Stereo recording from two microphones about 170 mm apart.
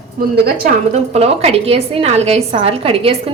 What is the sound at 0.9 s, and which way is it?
A woman's voice, 40° right (ahead or behind).